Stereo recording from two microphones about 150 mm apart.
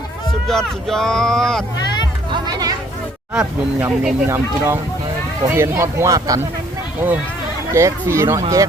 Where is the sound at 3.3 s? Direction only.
5° right (ahead or behind).